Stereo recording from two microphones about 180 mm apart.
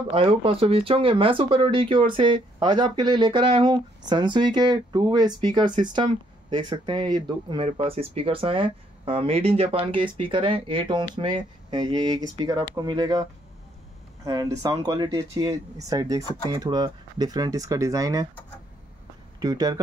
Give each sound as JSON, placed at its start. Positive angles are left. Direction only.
{"t": 0.1, "sound": "speech", "side_deg": -30}
{"t": 19.4, "sound": "speech", "side_deg": -20}